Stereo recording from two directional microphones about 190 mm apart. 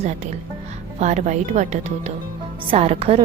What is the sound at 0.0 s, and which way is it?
A woman's voice, 40° right (ahead or behind).